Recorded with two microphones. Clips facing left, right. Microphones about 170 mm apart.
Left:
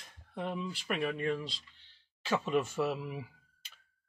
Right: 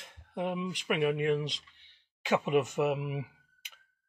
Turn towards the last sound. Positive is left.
turn(degrees=-15)  # may be behind; listen again after turning